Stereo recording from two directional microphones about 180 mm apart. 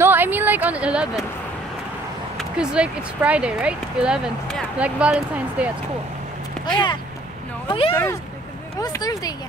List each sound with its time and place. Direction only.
0.0 s a sound: 10° right (ahead or behind)
2.3 s speech: 5° right (ahead or behind)
6.6 s speech: 25° left (ahead or behind)
7.9 s speech: 15° left (ahead or behind)